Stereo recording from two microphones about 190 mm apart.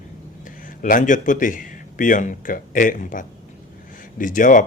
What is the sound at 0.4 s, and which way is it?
Speech, 45° left (ahead or behind).